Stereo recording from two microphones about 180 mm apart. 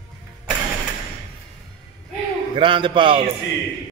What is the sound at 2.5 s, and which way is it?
Speech, 30° right (ahead or behind).